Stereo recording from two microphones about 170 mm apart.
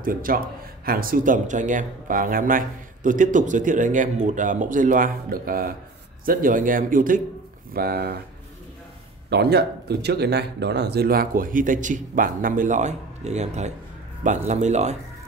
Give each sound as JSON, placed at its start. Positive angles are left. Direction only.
{"t": 0.0, "sound": "speech", "side_deg": -55}
{"t": 7.7, "sound": "speech", "side_deg": -65}
{"t": 9.3, "sound": "speech", "side_deg": -75}